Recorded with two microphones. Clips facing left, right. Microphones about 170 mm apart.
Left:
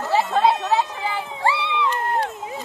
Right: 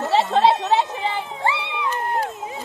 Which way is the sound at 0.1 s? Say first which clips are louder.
Right 1 dB; 25° right (ahead or behind).